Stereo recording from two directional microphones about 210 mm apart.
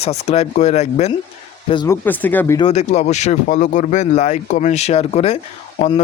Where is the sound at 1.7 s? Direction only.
20° left (ahead or behind).